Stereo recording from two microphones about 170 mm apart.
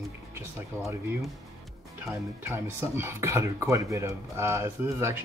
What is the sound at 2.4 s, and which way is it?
Speech, 15° right (ahead or behind).